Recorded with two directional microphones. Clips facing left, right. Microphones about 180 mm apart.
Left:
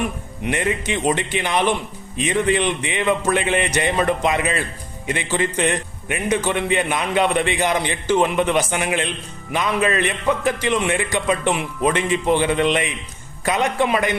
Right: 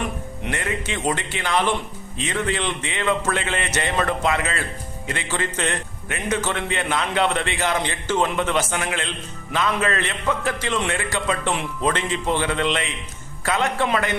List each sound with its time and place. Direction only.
0.5 s a man's voice: 20° left (ahead or behind)